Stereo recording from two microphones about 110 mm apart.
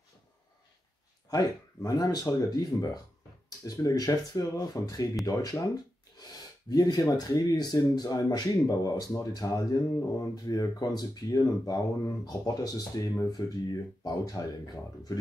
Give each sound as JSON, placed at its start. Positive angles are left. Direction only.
{"t": 1.3, "sound": "speech", "side_deg": 35}
{"t": 6.7, "sound": "speech", "side_deg": 35}